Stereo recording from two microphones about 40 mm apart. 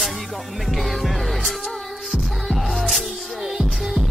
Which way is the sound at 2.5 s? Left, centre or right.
Centre.